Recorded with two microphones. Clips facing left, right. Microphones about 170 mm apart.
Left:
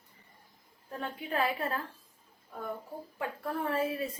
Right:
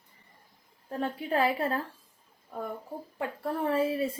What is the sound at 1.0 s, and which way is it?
Speech, 30° right (ahead or behind).